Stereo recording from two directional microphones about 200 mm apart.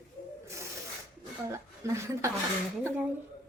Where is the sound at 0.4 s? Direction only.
15° right (ahead or behind).